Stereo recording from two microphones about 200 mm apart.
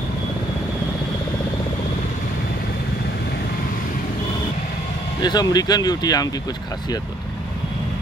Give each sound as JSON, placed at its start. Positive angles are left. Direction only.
{"t": 5.2, "sound": "speech", "side_deg": 20}